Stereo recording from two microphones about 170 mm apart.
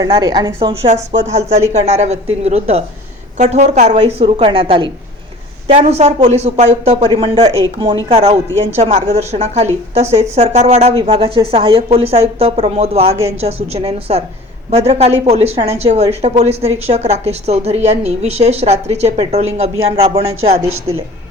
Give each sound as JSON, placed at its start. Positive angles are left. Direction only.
{"t": 0.0, "sound": "speech", "side_deg": -25}
{"t": 1.8, "sound": "a woman's voice", "side_deg": -40}
{"t": 5.6, "sound": "a woman's voice", "side_deg": -40}